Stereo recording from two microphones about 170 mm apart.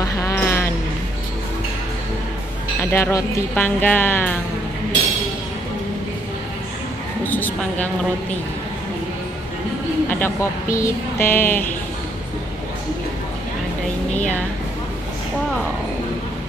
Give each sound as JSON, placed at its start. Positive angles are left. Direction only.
{"t": 0.0, "sound": "music", "side_deg": 20}
{"t": 2.8, "sound": "speech", "side_deg": 15}
{"t": 7.2, "sound": "a sound", "side_deg": 10}
{"t": 10.0, "sound": "speech", "side_deg": 10}
{"t": 14.1, "sound": "speech", "side_deg": 10}